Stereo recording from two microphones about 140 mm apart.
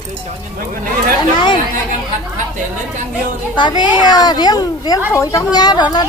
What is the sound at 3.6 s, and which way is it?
Speech, 30° left (ahead or behind).